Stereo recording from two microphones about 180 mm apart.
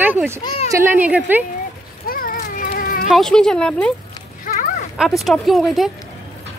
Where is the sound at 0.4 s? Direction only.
25° left (ahead or behind).